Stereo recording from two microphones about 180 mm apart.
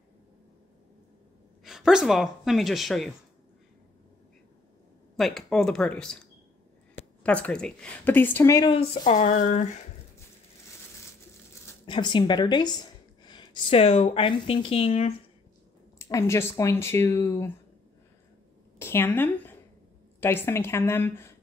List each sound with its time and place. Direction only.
1.6 s speech: centre (ahead or behind)
5.1 s speech: centre (ahead or behind); by 8.7 s 20° left (ahead or behind)
9.0 s speech: 45° left (ahead or behind)
11.8 s speech: 25° left (ahead or behind)
16.0 s speech: 15° left (ahead or behind)
18.8 s a woman's voice: 15° left (ahead or behind)